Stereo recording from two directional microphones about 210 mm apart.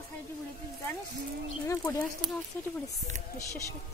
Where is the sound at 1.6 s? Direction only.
15° left (ahead or behind).